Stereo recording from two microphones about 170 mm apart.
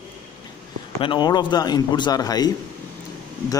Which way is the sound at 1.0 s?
25° left (ahead or behind).